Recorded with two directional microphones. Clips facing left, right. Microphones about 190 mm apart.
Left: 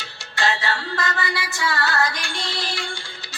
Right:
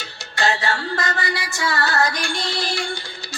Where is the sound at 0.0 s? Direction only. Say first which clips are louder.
Right 2 dB; 45° right (ahead or behind).